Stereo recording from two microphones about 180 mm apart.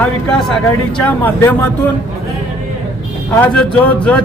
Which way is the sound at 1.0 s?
10° left (ahead or behind).